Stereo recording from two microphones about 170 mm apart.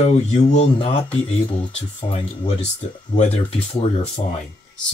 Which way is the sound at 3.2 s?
35° left (ahead or behind).